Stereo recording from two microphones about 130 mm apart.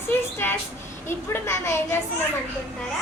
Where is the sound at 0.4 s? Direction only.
20° left (ahead or behind).